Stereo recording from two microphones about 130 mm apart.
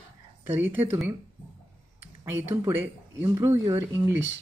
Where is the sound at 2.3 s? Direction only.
20° right (ahead or behind).